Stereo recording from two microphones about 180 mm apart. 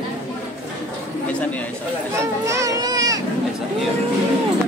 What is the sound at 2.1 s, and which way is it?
Children playing, 15° right (ahead or behind).